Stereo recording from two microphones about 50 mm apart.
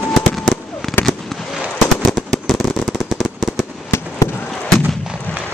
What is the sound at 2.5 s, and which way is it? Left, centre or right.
Fireworks, centre.